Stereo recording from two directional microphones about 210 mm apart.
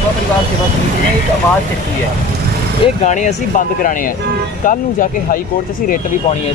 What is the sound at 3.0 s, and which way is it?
Speech, 35° left (ahead or behind).